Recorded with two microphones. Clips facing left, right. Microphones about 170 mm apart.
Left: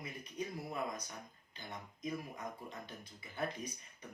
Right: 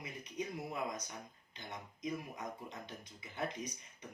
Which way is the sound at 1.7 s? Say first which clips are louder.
Right 1 dB; 20° right (ahead or behind).